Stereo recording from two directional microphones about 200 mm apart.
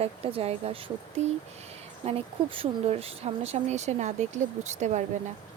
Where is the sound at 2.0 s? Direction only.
30° right (ahead or behind).